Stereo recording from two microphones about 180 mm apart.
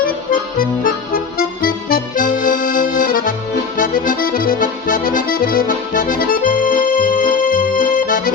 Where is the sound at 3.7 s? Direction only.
50° left (ahead or behind).